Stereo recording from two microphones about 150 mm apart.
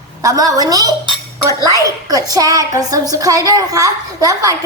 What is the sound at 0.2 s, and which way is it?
Speech, 20° right (ahead or behind).